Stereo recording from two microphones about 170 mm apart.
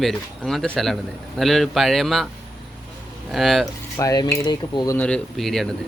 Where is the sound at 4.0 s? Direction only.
20° left (ahead or behind).